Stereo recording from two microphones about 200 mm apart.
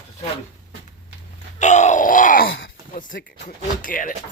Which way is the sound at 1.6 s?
35° left (ahead or behind).